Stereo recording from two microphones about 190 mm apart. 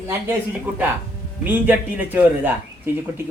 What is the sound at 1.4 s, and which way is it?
Speech, 10° right (ahead or behind).